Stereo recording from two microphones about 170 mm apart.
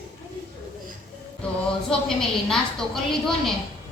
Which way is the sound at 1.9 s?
5° left (ahead or behind).